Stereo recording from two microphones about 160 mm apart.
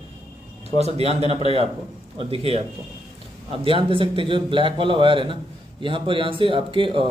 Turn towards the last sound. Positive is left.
turn(degrees=-35)  # may be behind; listen again after turning